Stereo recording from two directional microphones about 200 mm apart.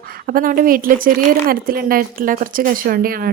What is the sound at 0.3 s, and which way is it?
Speech, 45° right (ahead or behind).